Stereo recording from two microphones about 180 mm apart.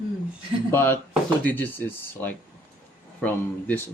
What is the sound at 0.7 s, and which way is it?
Speech, 10° left (ahead or behind).